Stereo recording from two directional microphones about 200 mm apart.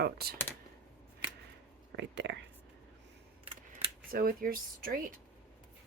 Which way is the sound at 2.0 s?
60° right (ahead or behind).